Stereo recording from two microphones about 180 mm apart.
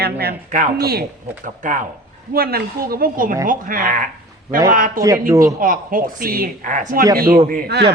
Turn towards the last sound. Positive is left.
turn(degrees=-60)  # may be behind; listen again after turning